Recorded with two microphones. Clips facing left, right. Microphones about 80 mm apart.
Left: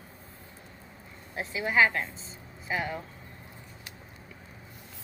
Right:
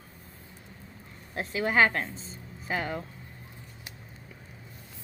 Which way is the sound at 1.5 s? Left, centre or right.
Right.